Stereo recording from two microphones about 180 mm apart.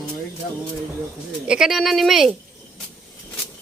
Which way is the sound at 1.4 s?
5° right (ahead or behind).